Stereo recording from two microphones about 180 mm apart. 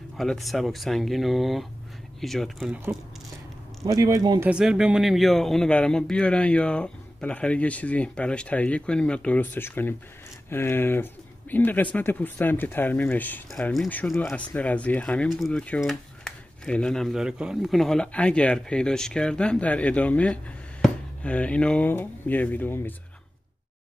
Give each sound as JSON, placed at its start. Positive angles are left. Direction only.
{"t": 0.2, "sound": "speech", "side_deg": 0}
{"t": 3.8, "sound": "speech", "side_deg": -20}
{"t": 4.5, "sound": "speech", "side_deg": -5}